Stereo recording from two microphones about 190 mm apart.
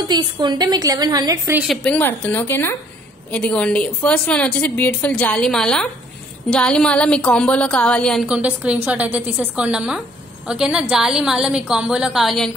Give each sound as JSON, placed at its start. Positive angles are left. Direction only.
{"t": 0.0, "sound": "a woman's voice", "side_deg": -20}
{"t": 1.6, "sound": "a woman's voice", "side_deg": 0}